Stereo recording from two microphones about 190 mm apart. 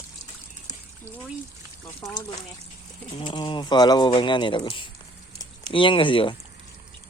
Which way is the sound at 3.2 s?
25° left (ahead or behind).